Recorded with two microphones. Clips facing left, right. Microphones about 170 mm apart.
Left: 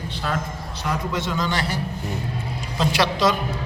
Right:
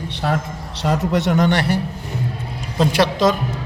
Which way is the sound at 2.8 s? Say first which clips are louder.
Right 4 dB; 50° right (ahead or behind).